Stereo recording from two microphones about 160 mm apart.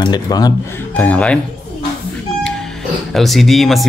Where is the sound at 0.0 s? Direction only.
25° left (ahead or behind).